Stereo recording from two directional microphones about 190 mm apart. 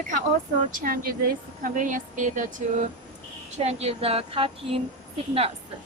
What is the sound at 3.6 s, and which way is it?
A woman's voice, 35° right (ahead or behind).